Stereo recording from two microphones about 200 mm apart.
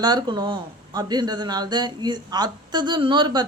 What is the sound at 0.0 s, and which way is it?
Speech, 20° right (ahead or behind).